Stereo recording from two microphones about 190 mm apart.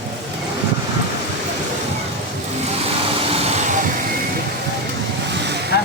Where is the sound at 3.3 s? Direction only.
35° right (ahead or behind).